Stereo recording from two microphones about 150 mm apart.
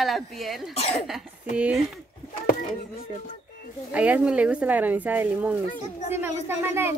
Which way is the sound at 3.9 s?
10° right (ahead or behind).